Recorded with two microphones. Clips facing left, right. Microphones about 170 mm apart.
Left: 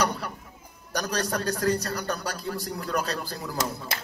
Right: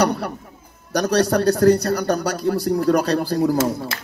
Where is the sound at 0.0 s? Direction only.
65° right (ahead or behind).